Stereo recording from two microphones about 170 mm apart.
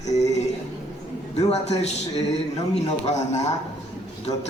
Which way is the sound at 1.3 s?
40° left (ahead or behind).